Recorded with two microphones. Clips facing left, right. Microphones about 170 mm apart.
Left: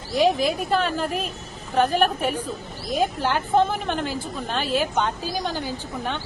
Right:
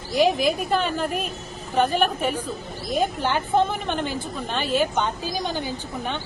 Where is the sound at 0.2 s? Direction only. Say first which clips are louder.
Even; centre (ahead or behind).